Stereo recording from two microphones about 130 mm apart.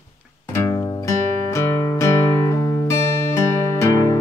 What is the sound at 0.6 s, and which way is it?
Music, 20° left (ahead or behind).